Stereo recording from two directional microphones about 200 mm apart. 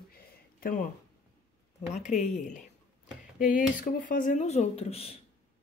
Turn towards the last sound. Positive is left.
turn(degrees=30)  # may be behind; listen again after turning